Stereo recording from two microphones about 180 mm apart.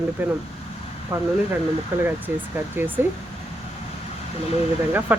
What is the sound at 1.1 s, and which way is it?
Speech, 15° right (ahead or behind).